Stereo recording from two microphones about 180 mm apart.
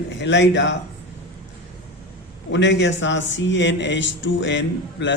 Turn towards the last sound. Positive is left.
turn(degrees=85)